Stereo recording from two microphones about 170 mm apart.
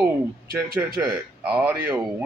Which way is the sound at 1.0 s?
5° right (ahead or behind).